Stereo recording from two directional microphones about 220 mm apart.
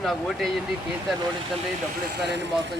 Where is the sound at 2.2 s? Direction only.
50° right (ahead or behind).